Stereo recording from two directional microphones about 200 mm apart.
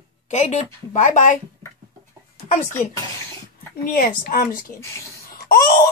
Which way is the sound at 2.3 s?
40° left (ahead or behind).